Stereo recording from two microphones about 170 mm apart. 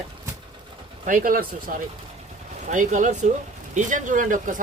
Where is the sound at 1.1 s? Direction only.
55° right (ahead or behind).